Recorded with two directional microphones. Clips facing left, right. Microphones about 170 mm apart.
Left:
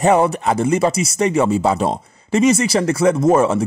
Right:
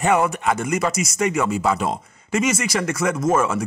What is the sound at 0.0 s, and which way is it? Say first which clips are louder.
Speech: left 4 dB; 35° left (ahead or behind).